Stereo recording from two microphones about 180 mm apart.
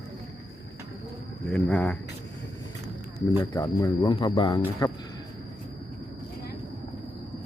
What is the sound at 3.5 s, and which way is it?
Speech, 20° left (ahead or behind).